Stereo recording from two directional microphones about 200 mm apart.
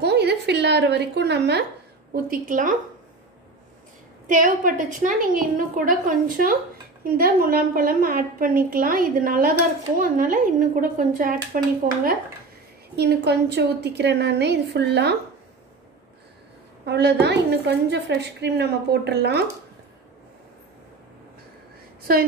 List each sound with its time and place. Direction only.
0.0 s a woman's voice: 55° right (ahead or behind)
2.2 s a woman's voice: 45° right (ahead or behind)
4.3 s a woman's voice: 45° right (ahead or behind)
12.9 s a woman's voice: 55° right (ahead or behind)
16.8 s a woman's voice: 55° right (ahead or behind)
22.1 s a woman's voice: 50° right (ahead or behind)